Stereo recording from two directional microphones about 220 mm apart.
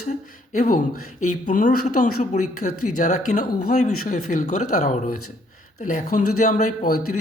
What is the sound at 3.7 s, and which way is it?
Speech, 30° left (ahead or behind).